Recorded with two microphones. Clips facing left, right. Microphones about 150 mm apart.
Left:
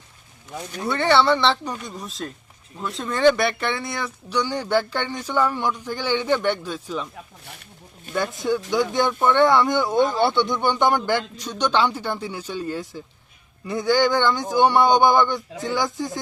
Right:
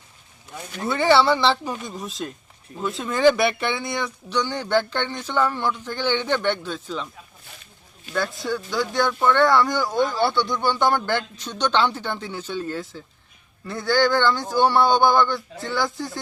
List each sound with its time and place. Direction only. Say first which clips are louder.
0.8 s speech: right 1 dB; centre (ahead or behind)
8.1 s speech: left 2 dB; 20° left (ahead or behind)